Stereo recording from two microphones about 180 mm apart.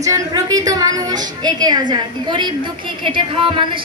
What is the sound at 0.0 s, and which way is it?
A woman's voice, 20° right (ahead or behind).